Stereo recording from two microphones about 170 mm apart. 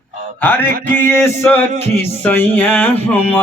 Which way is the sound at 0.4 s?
10° left (ahead or behind).